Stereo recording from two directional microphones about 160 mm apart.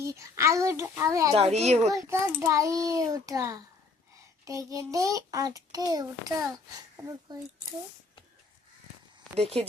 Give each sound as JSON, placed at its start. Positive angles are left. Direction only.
{"t": 0.0, "sound": "a child's voice", "side_deg": -20}
{"t": 1.4, "sound": "a child's voice", "side_deg": -40}
{"t": 1.9, "sound": "a child's voice", "side_deg": -20}
{"t": 9.3, "sound": "speech", "side_deg": -40}